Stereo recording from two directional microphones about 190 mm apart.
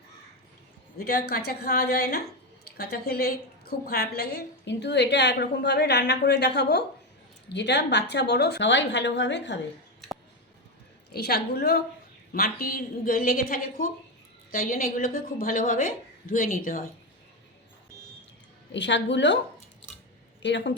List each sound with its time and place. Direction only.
0.9 s a woman's voice: 55° left (ahead or behind)
11.1 s a woman's voice: 55° left (ahead or behind)
18.7 s a woman's voice: 70° left (ahead or behind)
20.4 s a woman's voice: 70° left (ahead or behind)